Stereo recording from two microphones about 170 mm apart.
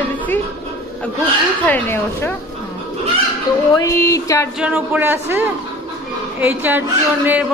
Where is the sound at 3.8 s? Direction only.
20° left (ahead or behind).